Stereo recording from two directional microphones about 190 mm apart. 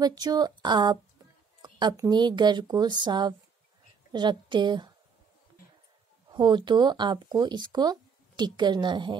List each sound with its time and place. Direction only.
0.0 s speech: 20° right (ahead or behind)
6.3 s speech: 25° right (ahead or behind)